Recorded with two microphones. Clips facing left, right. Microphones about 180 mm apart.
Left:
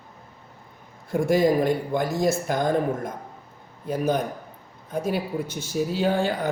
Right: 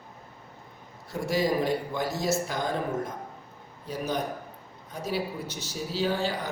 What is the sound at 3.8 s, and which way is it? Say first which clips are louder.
Speech: left 6 dB; 50° left (ahead or behind).